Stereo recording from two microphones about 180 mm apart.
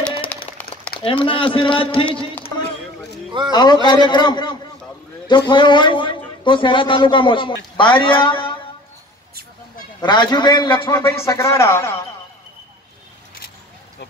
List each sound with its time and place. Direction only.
0.3 s a sound: 5° left (ahead or behind)
0.9 s a man's voice: 30° left (ahead or behind)
3.5 s a man's voice: 25° left (ahead or behind)
10.0 s a man's voice: 25° left (ahead or behind)